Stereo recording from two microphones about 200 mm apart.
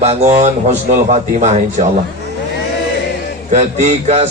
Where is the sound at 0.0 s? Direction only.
35° right (ahead or behind).